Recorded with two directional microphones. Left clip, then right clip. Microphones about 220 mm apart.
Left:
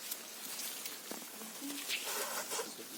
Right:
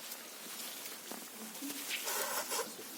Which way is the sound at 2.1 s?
25° right (ahead or behind).